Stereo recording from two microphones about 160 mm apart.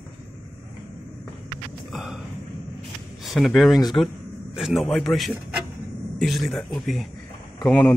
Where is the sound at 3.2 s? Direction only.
Centre (ahead or behind).